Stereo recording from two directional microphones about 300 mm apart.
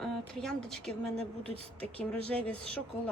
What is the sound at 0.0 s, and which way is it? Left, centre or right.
A woman's voice, centre.